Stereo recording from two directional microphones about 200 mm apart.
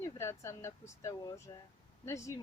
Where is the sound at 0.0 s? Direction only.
15° left (ahead or behind).